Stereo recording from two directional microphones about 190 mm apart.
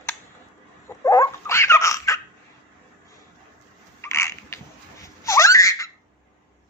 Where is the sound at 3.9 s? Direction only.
15° left (ahead or behind).